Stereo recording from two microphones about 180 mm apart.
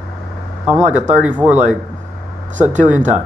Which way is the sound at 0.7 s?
40° right (ahead or behind).